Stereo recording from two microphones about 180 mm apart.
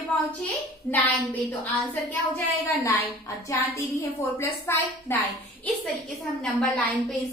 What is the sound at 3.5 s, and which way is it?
A woman's voice, 15° left (ahead or behind).